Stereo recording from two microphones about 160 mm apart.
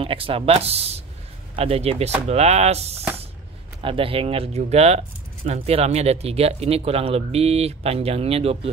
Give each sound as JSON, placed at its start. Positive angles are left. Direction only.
{"t": 0.0, "sound": "speech", "side_deg": -35}